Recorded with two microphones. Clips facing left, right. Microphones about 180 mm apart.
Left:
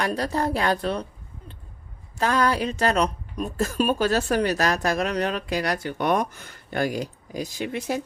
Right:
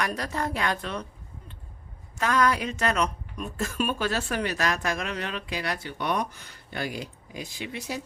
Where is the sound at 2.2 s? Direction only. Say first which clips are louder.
Left 2 dB; 35° left (ahead or behind).